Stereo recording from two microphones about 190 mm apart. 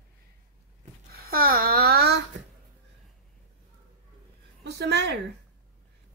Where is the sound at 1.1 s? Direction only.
50° right (ahead or behind).